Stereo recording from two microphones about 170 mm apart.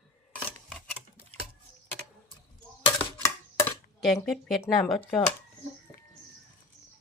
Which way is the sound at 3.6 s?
Centre (ahead or behind).